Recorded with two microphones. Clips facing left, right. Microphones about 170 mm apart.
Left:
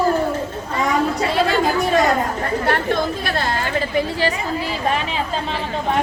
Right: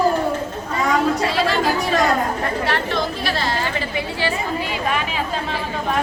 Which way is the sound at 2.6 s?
50° left (ahead or behind).